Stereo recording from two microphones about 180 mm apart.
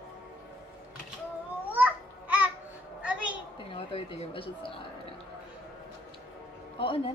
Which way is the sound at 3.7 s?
30° left (ahead or behind).